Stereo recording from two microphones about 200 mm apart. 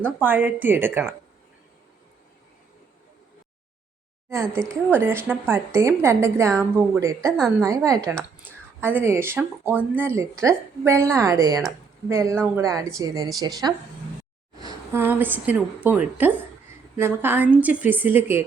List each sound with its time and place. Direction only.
0.0 s a woman's voice: 10° right (ahead or behind)
4.3 s a woman's voice: 15° right (ahead or behind)